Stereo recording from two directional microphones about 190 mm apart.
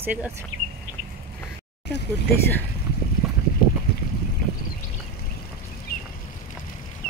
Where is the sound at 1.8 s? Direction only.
65° left (ahead or behind).